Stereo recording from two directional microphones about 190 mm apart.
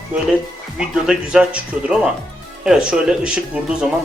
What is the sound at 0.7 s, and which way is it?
Speech, 5° right (ahead or behind).